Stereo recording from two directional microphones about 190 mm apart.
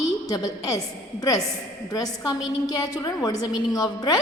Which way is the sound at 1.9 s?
20° left (ahead or behind).